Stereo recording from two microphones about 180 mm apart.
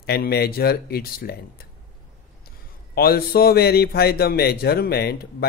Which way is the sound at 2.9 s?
60° left (ahead or behind).